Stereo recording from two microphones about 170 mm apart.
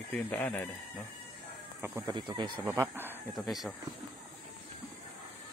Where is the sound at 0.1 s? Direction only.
10° left (ahead or behind).